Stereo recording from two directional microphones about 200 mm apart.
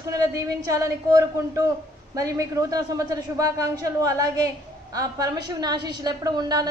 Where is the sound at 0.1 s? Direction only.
15° right (ahead or behind).